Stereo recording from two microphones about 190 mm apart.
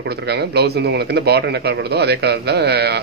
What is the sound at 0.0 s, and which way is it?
A man's voice, 60° right (ahead or behind).